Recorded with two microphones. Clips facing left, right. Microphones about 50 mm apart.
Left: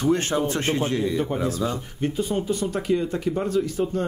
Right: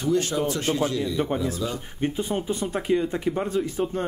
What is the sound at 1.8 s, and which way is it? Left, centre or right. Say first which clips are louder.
Speech: left 1 dB; right.